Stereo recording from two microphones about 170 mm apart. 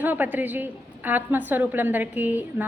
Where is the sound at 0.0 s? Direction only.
10° right (ahead or behind).